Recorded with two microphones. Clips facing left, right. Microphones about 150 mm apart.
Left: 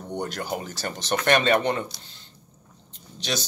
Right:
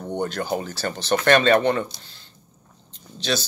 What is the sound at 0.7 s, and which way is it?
A man's voice, 15° left (ahead or behind).